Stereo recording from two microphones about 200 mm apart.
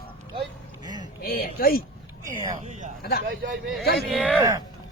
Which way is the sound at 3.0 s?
50° left (ahead or behind).